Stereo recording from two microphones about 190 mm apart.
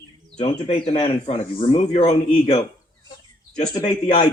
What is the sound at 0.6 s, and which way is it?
Speech, 30° left (ahead or behind).